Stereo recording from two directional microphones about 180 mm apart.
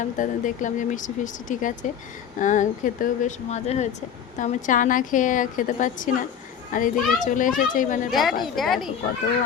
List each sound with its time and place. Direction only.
0.0 s a woman's voice: 45° left (ahead or behind)
8.1 s speech: centre (ahead or behind)